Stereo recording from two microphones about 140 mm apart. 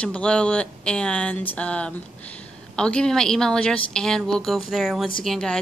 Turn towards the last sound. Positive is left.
turn(degrees=5)  # may be behind; listen again after turning